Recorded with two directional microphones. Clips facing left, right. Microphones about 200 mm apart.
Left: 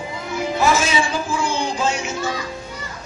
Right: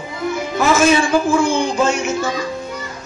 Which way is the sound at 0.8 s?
50° right (ahead or behind).